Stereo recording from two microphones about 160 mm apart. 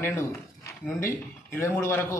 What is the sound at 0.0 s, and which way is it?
Speech, 15° left (ahead or behind).